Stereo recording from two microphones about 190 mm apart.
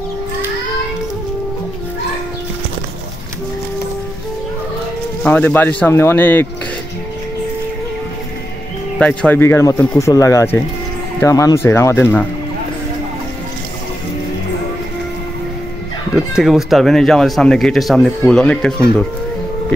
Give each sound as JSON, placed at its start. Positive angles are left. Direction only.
{"t": 5.2, "sound": "a man's voice", "side_deg": 10}
{"t": 8.9, "sound": "a man's voice", "side_deg": 5}
{"t": 16.2, "sound": "speech", "side_deg": 0}